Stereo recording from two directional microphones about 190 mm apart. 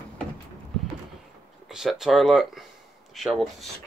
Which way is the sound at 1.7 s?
Centre (ahead or behind).